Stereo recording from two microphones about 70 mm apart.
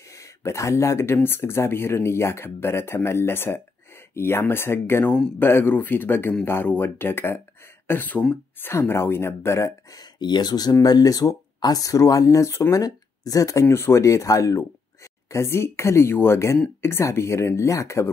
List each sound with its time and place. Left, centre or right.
0.1 s speech: left
9.9 s speech: left
10.7 s speech: left
12.8 s speech: left
13.7 s speech: left
15.3 s speech: left